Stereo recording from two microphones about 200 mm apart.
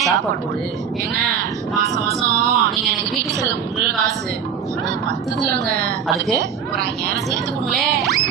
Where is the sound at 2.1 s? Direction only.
15° right (ahead or behind).